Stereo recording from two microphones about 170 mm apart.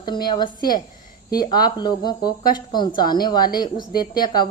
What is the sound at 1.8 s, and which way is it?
Speech, 25° left (ahead or behind).